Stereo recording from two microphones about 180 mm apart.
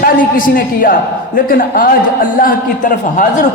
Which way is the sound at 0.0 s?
50° left (ahead or behind).